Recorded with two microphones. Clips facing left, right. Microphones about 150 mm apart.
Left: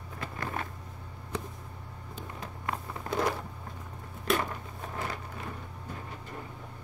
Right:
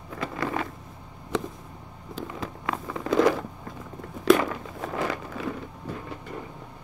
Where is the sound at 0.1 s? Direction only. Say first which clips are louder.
Right 7 dB; 90° right.